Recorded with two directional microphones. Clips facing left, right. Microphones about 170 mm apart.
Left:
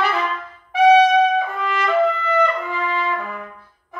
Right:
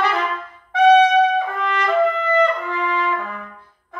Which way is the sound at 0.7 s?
10° left (ahead or behind).